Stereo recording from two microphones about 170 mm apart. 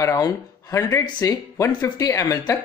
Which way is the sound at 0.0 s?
20° left (ahead or behind).